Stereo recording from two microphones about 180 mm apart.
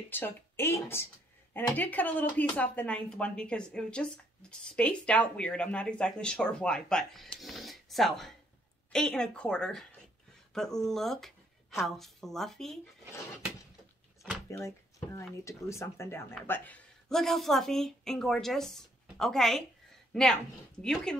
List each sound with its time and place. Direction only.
0.1 s a woman's voice: 10° left (ahead or behind)
14.5 s a woman's voice: 15° left (ahead or behind)